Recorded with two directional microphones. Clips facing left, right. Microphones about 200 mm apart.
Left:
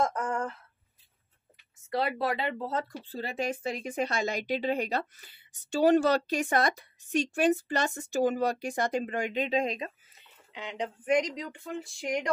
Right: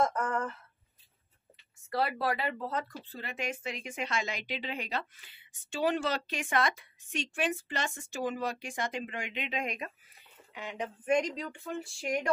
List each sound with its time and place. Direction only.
0.1 s a sound: 15° left (ahead or behind)
1.9 s a woman's voice: 20° left (ahead or behind)
10.5 s speech: 20° left (ahead or behind)